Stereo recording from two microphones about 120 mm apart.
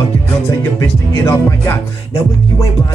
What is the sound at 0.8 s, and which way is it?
Music, 20° left (ahead or behind).